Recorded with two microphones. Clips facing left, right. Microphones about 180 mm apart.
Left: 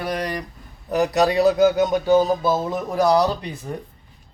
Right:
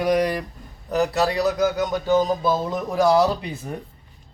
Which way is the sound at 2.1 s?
10° left (ahead or behind).